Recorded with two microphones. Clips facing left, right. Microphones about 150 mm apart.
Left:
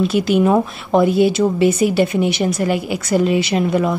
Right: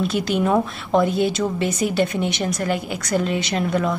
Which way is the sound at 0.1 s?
5° left (ahead or behind).